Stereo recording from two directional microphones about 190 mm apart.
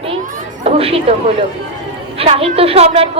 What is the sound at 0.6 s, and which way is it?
A woman's voice, 30° right (ahead or behind).